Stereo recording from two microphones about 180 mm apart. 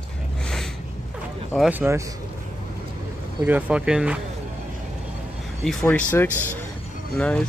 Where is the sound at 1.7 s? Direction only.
10° right (ahead or behind).